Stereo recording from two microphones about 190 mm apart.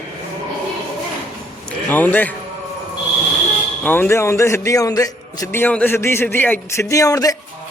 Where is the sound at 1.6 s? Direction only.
10° left (ahead or behind).